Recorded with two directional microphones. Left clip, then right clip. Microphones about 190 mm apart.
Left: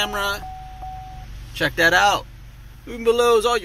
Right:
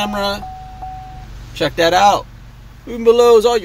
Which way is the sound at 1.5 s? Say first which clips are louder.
Right 3 dB; 10° right (ahead or behind).